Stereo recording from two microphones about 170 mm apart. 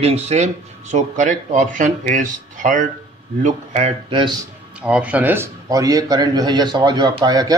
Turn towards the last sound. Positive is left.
turn(degrees=-20)  # may be behind; listen again after turning